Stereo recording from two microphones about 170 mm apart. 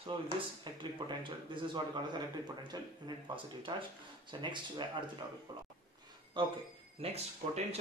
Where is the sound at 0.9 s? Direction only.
30° right (ahead or behind).